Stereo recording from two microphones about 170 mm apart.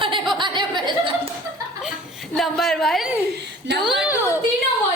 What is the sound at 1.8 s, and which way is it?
Chuckle, centre (ahead or behind).